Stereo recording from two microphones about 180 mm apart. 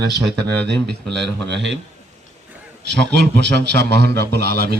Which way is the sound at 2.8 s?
70° right (ahead or behind).